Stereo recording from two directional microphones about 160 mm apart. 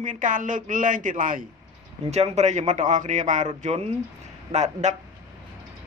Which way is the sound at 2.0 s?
45° right (ahead or behind).